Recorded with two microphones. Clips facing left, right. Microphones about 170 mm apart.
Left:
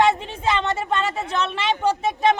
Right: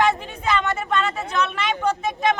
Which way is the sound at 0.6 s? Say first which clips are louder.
Even; 25° left (ahead or behind).